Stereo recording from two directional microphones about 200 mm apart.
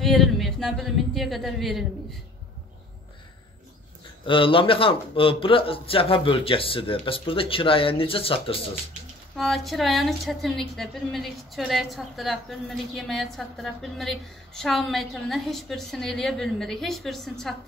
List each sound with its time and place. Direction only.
0.0 s a woman's voice: centre (ahead or behind)
4.3 s a man's voice: 25° left (ahead or behind)
9.4 s a woman's voice: centre (ahead or behind)